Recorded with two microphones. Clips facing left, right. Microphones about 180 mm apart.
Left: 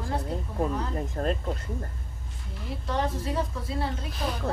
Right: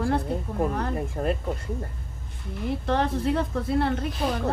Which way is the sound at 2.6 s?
60° right (ahead or behind).